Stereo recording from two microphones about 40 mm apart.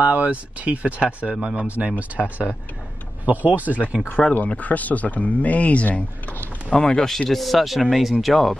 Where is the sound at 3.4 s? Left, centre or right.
Right.